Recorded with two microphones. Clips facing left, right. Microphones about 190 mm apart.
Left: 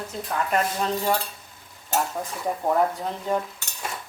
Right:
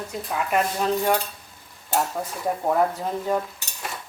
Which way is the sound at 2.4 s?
Centre (ahead or behind).